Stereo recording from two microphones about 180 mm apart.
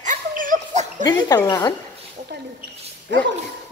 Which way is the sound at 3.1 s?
90° right.